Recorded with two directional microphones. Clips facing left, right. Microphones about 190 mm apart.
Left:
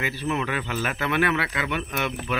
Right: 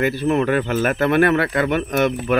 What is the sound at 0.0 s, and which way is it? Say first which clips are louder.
Speech: right 9 dB; 50° right (ahead or behind).